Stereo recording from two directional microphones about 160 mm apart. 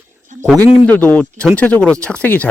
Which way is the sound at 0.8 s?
10° left (ahead or behind).